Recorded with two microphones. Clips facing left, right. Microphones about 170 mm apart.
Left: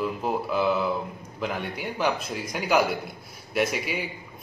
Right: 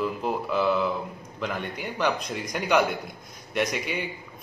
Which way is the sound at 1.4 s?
10° left (ahead or behind).